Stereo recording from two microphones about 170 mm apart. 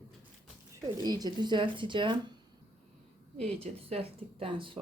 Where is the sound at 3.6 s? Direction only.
35° right (ahead or behind).